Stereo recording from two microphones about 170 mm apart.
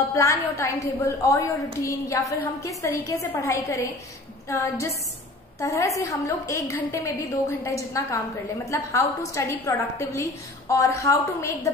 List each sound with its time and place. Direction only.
0.1 s a woman's voice: 15° left (ahead or behind)